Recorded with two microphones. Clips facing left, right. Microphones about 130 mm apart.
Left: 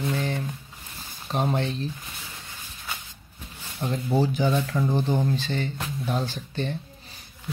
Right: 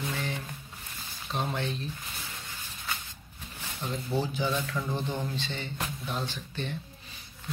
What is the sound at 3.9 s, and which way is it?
Speech, 45° left (ahead or behind).